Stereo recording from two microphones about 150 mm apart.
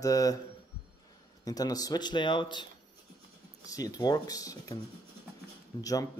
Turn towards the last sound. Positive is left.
turn(degrees=25)  # may be behind; listen again after turning